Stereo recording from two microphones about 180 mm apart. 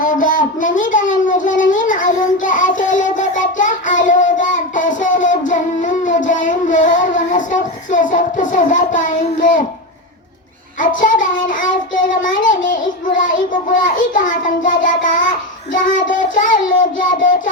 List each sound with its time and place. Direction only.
0.0 s a child's voice: 50° left (ahead or behind)
1.3 s child singing: 45° left (ahead or behind)
9.0 s speech: 45° left (ahead or behind)
10.8 s child singing: 45° left (ahead or behind)
11.9 s a child's voice: 50° left (ahead or behind)